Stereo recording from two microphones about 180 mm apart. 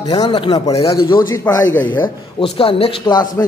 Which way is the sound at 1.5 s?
15° left (ahead or behind).